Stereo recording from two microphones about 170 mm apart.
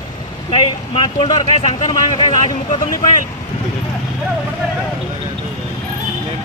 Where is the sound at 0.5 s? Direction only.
30° left (ahead or behind).